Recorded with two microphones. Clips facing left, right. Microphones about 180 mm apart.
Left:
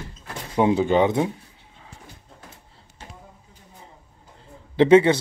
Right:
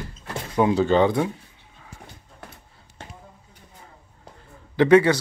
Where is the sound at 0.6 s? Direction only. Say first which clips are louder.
Even; 20° left (ahead or behind).